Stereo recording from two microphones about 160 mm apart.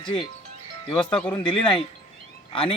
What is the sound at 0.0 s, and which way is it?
Speech, 30° left (ahead or behind).